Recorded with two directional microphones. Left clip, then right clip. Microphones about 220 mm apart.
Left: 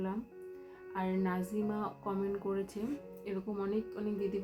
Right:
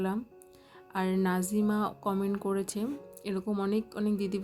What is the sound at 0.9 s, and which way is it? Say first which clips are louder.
Speech: right 5 dB; 50° right (ahead or behind).